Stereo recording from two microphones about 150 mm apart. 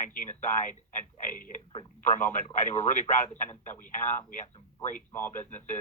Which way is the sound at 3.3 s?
55° left (ahead or behind).